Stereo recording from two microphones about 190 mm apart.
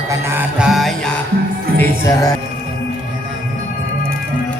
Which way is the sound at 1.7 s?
15° left (ahead or behind).